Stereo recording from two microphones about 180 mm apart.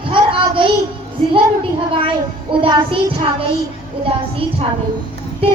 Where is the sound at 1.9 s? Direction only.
30° right (ahead or behind).